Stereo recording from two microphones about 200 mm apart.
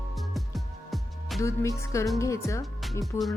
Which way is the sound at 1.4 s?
15° left (ahead or behind).